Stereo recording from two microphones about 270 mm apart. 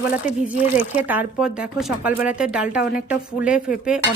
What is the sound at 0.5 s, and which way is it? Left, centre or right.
Speech, left.